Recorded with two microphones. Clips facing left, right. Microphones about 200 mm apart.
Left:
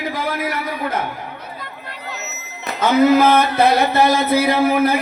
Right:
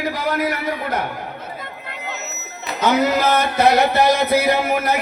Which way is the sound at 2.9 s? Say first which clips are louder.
Left 6 dB; 55° left (ahead or behind).